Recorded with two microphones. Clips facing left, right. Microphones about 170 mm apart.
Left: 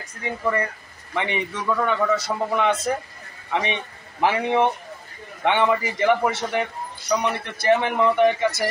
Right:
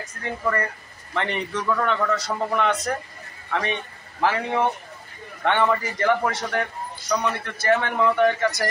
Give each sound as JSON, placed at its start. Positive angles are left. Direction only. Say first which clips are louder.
{"t": 0.2, "sound": "a man's voice", "louder": "left 1 dB", "side_deg": 10}
{"t": 3.5, "sound": "a man's voice", "louder": "left 1 dB", "side_deg": 15}